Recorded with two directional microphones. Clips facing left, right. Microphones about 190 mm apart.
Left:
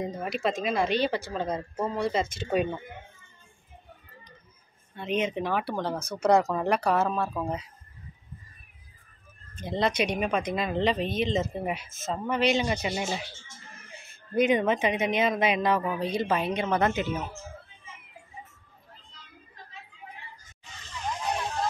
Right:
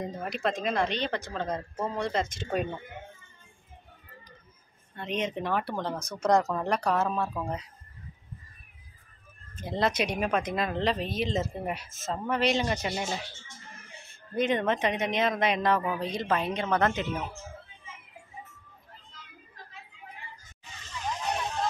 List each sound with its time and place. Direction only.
0.2 s speech: 5° left (ahead or behind)
4.9 s speech: 5° left (ahead or behind)
9.6 s speech: centre (ahead or behind)
14.4 s speech: 5° left (ahead or behind)